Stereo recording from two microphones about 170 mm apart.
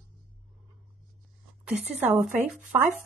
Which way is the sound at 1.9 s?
5° right (ahead or behind).